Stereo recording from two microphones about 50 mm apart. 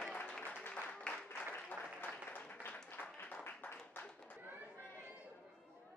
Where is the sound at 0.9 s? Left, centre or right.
Left.